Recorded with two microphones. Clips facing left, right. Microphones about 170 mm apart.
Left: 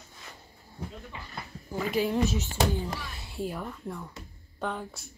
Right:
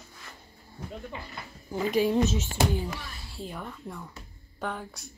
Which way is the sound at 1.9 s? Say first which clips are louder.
Right 2 dB; 20° right (ahead or behind).